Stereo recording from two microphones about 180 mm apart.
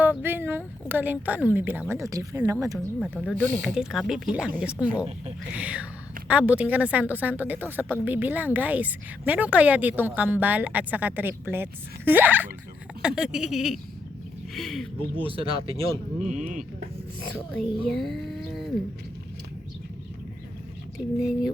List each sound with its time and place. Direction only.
0.0 s a woman's voice: 10° right (ahead or behind)
2.7 s a woman's voice: centre (ahead or behind)
15.2 s speech: 30° right (ahead or behind)
16.2 s speech: 45° right (ahead or behind)
17.3 s speech: 5° left (ahead or behind)
21.2 s speech: centre (ahead or behind)